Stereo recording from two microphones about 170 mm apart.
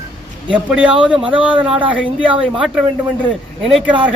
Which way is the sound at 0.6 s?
5° right (ahead or behind).